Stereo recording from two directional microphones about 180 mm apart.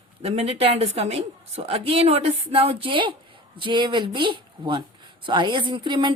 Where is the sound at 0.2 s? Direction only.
35° right (ahead or behind).